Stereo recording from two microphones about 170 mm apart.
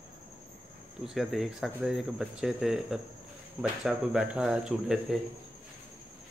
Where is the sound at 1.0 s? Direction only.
Centre (ahead or behind).